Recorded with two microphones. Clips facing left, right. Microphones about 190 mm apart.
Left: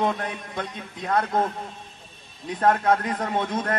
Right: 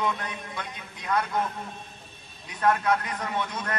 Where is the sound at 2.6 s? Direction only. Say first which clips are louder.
Left 3 dB; 40° left (ahead or behind).